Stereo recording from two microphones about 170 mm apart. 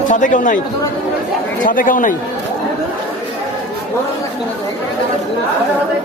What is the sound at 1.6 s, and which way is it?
Speech, 55° left (ahead or behind).